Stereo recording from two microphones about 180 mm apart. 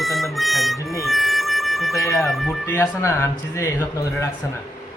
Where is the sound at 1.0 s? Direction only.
Centre (ahead or behind).